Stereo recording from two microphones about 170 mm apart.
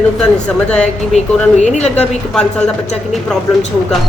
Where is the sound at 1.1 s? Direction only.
45° left (ahead or behind).